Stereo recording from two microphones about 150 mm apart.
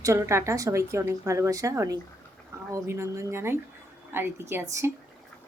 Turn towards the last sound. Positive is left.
turn(degrees=-15)  # may be behind; listen again after turning